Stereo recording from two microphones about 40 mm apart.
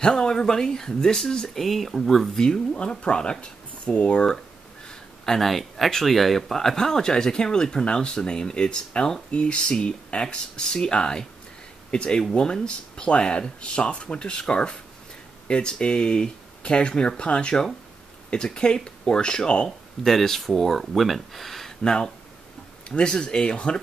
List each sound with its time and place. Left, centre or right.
0.1 s speech: centre
2.2 s speech: centre
4.8 s speech: centre
20.1 s speech: centre
21.8 s speech: centre